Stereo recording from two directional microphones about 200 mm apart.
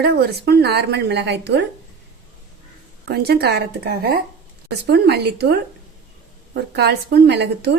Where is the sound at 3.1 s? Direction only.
55° right (ahead or behind).